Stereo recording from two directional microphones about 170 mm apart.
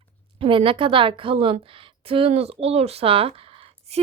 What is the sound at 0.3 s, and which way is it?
A woman's voice, 30° right (ahead or behind).